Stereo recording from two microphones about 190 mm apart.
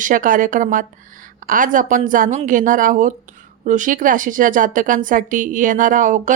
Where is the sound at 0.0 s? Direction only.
45° right (ahead or behind).